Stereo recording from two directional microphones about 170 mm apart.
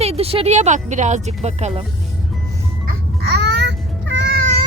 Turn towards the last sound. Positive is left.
turn(degrees=-85)